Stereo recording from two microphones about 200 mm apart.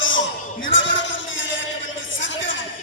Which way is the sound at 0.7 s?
65° left (ahead or behind).